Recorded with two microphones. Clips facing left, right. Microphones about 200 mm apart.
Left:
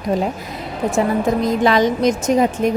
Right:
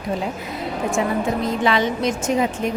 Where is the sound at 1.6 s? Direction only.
40° left (ahead or behind).